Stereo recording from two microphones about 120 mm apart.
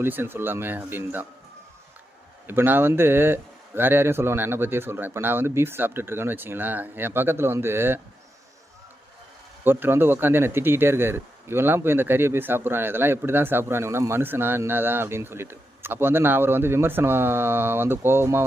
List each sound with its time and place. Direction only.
0.0 s speech: 20° right (ahead or behind)
2.5 s speech: 15° right (ahead or behind)
9.6 s speech: 20° right (ahead or behind)